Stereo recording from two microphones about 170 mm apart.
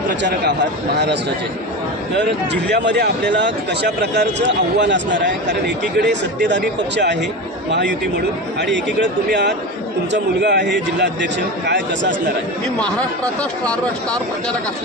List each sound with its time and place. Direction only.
0.2 s speech: 85° right
2.1 s speech: 90° right
8.5 s speech: 90° right
13.4 s speech: 5° left (ahead or behind)